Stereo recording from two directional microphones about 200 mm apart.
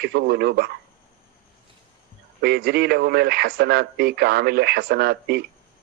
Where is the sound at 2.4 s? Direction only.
55° right (ahead or behind).